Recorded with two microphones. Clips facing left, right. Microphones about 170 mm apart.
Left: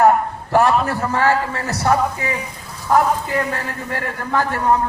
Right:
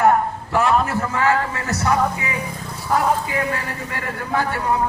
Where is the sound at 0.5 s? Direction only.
40° left (ahead or behind).